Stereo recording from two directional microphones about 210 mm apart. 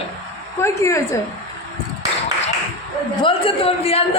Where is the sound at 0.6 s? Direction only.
15° left (ahead or behind).